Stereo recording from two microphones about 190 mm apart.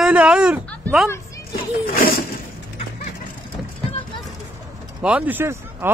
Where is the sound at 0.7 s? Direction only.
5° left (ahead or behind).